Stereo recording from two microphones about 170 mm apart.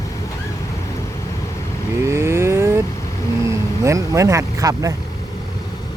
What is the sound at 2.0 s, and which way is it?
Vehicle, 15° right (ahead or behind).